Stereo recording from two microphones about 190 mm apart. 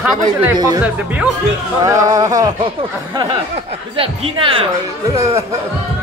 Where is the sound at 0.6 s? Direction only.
15° right (ahead or behind).